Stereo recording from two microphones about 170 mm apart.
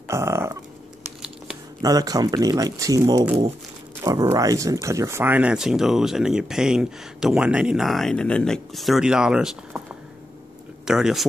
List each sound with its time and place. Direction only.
0.1 s a sound: 15° right (ahead or behind)
1.8 s speech: 20° right (ahead or behind); by 9.8 s 5° right (ahead or behind)
10.9 s speech: 5° right (ahead or behind)